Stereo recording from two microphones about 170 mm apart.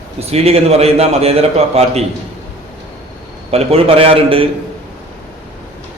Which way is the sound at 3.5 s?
35° right (ahead or behind).